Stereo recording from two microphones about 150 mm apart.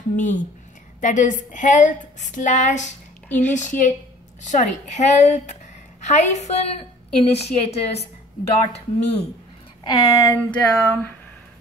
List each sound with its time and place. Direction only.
0.1 s a woman's voice: 55° left (ahead or behind)
3.3 s a woman's voice: 10° left (ahead or behind)
3.5 s a woman's voice: 55° left (ahead or behind)
9.8 s speech: 20° left (ahead or behind)